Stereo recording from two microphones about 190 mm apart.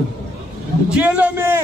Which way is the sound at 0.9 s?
5° right (ahead or behind).